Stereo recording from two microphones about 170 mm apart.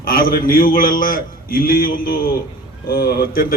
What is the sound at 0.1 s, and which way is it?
A man's voice, 60° left (ahead or behind).